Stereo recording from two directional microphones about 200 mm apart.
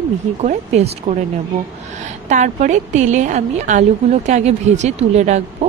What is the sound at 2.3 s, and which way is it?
A woman's voice, 35° right (ahead or behind).